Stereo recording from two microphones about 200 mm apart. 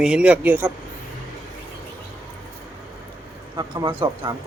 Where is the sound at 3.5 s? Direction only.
25° right (ahead or behind).